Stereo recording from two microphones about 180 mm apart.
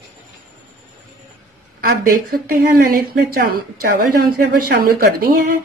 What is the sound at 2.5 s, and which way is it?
A woman's voice, 55° right (ahead or behind).